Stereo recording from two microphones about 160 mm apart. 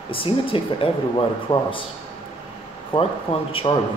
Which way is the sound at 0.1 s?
35° left (ahead or behind).